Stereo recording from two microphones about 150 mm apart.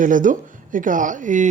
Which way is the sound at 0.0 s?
60° right (ahead or behind).